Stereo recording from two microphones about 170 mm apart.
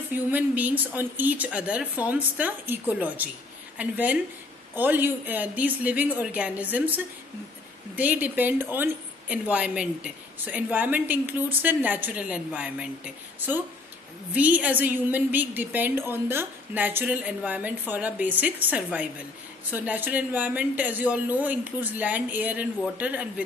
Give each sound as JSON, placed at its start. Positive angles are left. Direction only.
{"t": 0.1, "sound": "speech", "side_deg": -10}